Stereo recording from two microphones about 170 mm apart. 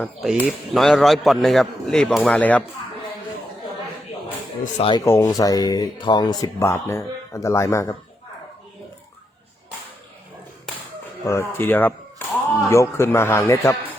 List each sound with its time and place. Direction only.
0.0 s a man's voice: centre (ahead or behind)
4.8 s speech: 30° left (ahead or behind)
5.0 s speech: 15° left (ahead or behind)
11.3 s speech: 15° left (ahead or behind)